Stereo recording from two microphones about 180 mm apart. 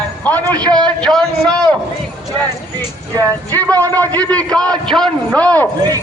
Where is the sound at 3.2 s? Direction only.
10° left (ahead or behind).